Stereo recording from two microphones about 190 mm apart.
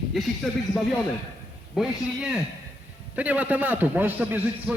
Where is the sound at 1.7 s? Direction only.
5° right (ahead or behind).